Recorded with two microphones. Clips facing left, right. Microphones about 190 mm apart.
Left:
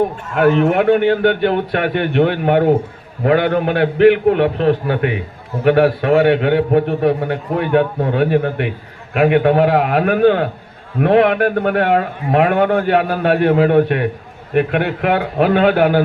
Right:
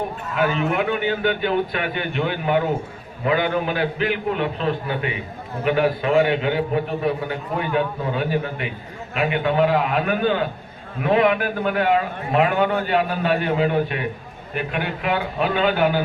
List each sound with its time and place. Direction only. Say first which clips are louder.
0.3 s a man's voice: left 8 dB; 65° left (ahead or behind)